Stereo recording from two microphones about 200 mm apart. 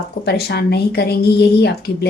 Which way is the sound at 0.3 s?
55° left (ahead or behind).